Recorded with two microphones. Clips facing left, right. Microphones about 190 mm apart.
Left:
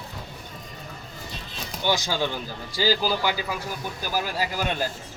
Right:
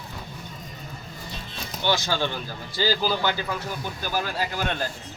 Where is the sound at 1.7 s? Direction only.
15° left (ahead or behind).